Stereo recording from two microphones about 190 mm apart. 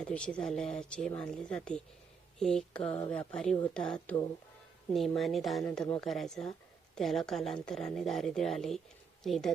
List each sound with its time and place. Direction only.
0.0 s speech: 5° left (ahead or behind)
2.8 s speech: 30° left (ahead or behind)
3.1 s speech: 5° left (ahead or behind)